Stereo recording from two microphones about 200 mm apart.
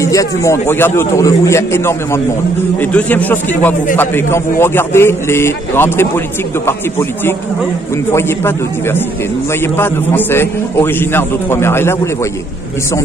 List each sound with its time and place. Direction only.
0.0 s a man's voice: 15° left (ahead or behind)